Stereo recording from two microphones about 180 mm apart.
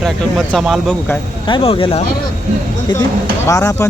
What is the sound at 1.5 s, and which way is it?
Speech, 30° left (ahead or behind).